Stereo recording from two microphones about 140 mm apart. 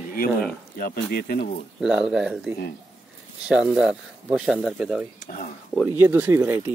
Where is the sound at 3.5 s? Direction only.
5° right (ahead or behind).